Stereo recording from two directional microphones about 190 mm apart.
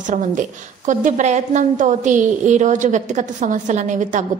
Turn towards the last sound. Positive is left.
turn(degrees=-40)  # may be behind; listen again after turning